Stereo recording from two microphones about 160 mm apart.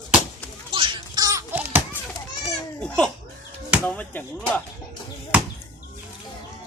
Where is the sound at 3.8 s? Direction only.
10° left (ahead or behind).